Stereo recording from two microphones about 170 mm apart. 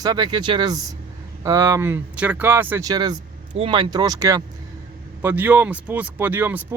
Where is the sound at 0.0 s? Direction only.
25° right (ahead or behind).